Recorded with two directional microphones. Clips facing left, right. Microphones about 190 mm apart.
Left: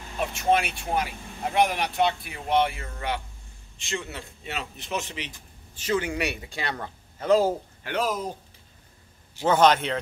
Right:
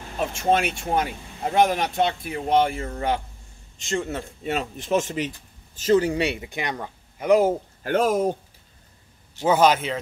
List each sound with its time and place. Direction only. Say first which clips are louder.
0.4 s speech: right 2 dB; 45° right (ahead or behind); by 7.5 s 15° right (ahead or behind)
7.8 s speech: right 8 dB; 50° right (ahead or behind)
9.4 s a man's voice: right 1 dB; 10° right (ahead or behind)